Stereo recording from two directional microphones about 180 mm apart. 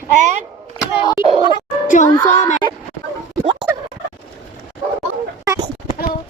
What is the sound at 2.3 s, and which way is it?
Speech, 40° left (ahead or behind).